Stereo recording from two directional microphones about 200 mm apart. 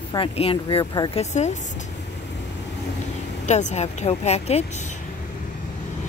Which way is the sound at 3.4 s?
35° left (ahead or behind).